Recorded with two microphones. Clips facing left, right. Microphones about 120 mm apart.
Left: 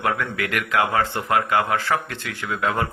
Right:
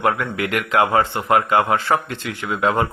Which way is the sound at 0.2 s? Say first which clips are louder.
Right 3 dB; 20° right (ahead or behind).